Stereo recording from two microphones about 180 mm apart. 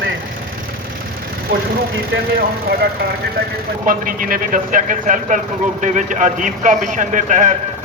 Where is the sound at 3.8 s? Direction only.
50° right (ahead or behind).